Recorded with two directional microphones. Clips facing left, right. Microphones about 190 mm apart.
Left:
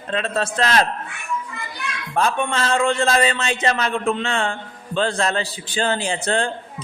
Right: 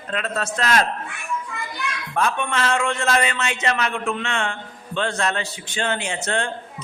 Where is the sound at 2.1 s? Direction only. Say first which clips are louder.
Left 3 dB; 35° left (ahead or behind).